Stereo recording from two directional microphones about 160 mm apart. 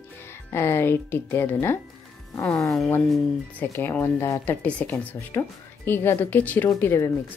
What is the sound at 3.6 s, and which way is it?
A woman's voice, 15° left (ahead or behind).